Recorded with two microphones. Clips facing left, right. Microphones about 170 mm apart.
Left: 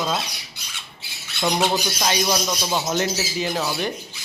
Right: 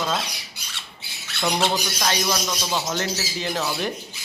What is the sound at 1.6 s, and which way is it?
Speech, 15° left (ahead or behind).